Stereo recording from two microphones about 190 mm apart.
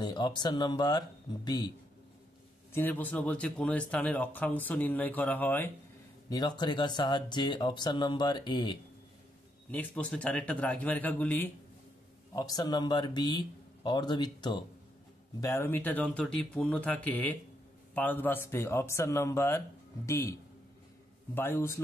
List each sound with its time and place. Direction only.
0.0 s speech: 25° left (ahead or behind)
2.7 s speech: 10° left (ahead or behind)
6.2 s speech: 20° left (ahead or behind)
9.7 s speech: 5° left (ahead or behind)
12.4 s speech: 20° left (ahead or behind)
21.4 s speech: 10° left (ahead or behind)